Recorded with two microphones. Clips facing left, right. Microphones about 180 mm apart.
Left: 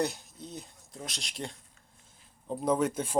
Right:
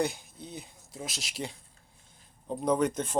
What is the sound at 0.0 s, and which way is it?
Speech, centre (ahead or behind).